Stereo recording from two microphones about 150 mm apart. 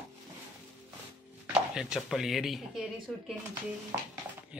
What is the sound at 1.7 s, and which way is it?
Speech, 5° right (ahead or behind).